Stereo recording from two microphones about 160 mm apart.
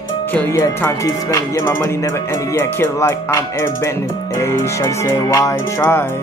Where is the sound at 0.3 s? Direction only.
10° left (ahead or behind).